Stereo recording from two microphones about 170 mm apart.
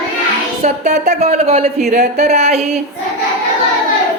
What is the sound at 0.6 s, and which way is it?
Speech, 45° right (ahead or behind).